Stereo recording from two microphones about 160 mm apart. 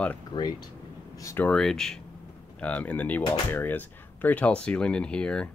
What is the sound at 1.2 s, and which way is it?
Speech, 20° left (ahead or behind).